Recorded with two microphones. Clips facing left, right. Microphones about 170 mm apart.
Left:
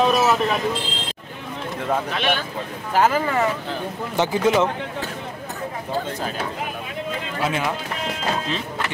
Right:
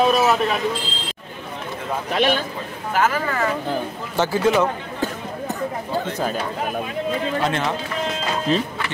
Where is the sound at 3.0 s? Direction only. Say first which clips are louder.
Left 2 dB; 25° left (ahead or behind).